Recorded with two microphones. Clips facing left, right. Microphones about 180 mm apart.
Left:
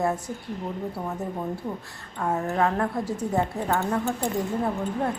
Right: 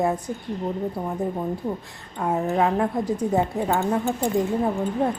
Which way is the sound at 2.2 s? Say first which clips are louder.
Right 3 dB; 15° right (ahead or behind).